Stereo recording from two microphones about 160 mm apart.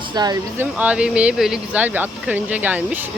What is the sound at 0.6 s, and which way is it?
Speech, 10° right (ahead or behind).